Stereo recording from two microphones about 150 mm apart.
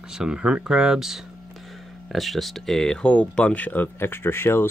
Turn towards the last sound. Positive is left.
turn(degrees=15)  # may be behind; listen again after turning